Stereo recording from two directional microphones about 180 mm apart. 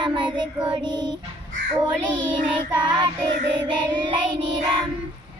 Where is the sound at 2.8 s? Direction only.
25° right (ahead or behind).